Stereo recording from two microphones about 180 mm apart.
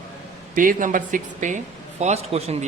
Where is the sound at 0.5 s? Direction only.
50° right (ahead or behind).